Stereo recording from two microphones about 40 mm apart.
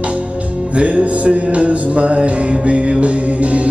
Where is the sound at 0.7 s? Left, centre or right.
Right.